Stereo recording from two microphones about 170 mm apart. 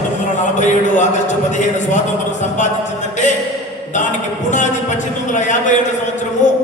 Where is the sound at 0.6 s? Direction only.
45° left (ahead or behind).